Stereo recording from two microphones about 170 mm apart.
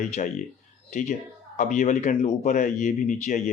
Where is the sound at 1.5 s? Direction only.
45° left (ahead or behind).